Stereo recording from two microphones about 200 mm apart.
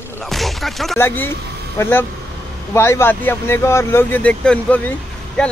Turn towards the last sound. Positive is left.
turn(degrees=5)  # may be behind; listen again after turning